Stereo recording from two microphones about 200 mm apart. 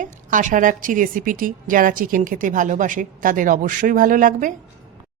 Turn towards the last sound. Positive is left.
turn(degrees=-40)  # may be behind; listen again after turning